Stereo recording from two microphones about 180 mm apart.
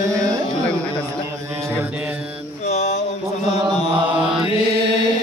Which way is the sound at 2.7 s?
40° left (ahead or behind).